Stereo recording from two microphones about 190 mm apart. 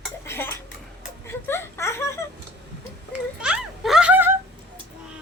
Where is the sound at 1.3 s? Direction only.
10° left (ahead or behind).